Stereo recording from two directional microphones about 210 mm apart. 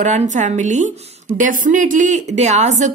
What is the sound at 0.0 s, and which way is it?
A woman's voice, 35° right (ahead or behind).